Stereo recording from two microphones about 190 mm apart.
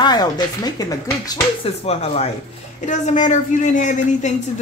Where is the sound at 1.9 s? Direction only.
35° left (ahead or behind).